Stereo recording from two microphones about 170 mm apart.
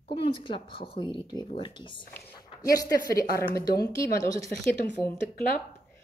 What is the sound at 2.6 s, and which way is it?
A woman's voice, 20° left (ahead or behind).